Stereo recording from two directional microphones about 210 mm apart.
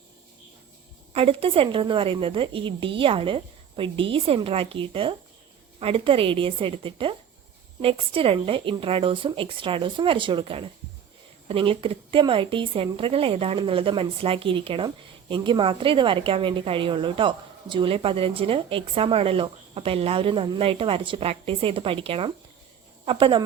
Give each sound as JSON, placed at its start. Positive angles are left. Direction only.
{"t": 1.1, "sound": "a woman's voice", "side_deg": -25}